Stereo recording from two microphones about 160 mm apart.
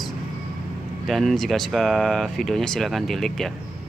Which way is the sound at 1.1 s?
Centre (ahead or behind).